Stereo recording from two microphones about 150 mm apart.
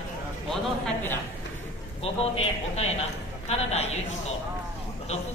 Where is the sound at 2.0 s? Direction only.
45° left (ahead or behind).